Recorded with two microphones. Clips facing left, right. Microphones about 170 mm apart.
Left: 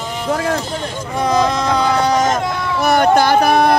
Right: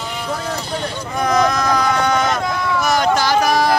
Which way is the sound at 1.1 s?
30° left (ahead or behind).